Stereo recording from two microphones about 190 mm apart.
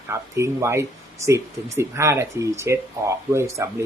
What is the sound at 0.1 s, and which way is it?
Speech, 15° right (ahead or behind).